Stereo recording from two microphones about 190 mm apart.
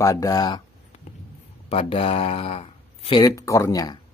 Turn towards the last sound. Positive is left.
turn(degrees=20)  # may be behind; listen again after turning